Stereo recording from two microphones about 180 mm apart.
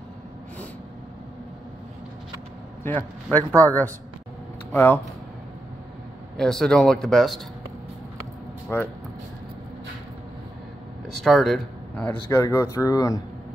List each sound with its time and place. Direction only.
2.8 s speech: 10° left (ahead or behind)
4.7 s speech: 10° left (ahead or behind)
6.3 s speech: 5° left (ahead or behind)
8.7 s speech: 10° left (ahead or behind)
11.1 s speech: centre (ahead or behind)
12.3 s speech: 15° left (ahead or behind)